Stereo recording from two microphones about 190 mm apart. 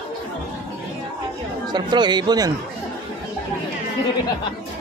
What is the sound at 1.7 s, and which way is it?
Speech, 25° right (ahead or behind).